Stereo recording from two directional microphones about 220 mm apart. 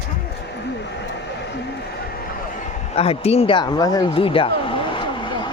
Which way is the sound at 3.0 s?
25° left (ahead or behind).